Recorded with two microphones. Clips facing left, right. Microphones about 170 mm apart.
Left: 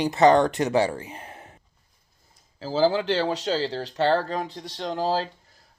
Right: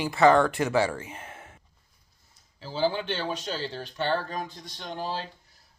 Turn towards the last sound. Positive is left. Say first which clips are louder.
# left 8 dB
turn(degrees=90)